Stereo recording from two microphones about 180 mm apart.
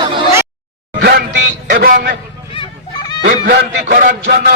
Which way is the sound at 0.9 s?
60° right (ahead or behind).